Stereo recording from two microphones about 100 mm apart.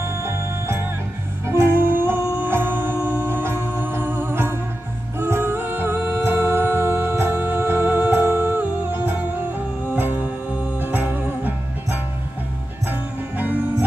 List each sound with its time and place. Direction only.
0.0 s music: 25° right (ahead or behind)
13.4 s music: 15° right (ahead or behind)